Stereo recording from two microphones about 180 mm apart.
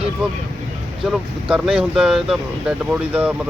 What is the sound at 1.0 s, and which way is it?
Speech, 5° right (ahead or behind).